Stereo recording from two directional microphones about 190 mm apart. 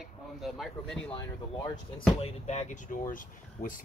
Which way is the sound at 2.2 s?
35° left (ahead or behind).